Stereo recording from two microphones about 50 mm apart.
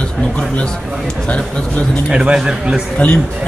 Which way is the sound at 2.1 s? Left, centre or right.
Centre.